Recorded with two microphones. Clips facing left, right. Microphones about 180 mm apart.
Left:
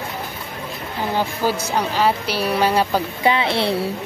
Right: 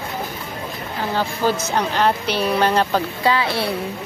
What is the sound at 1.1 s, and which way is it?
Speech, 10° left (ahead or behind).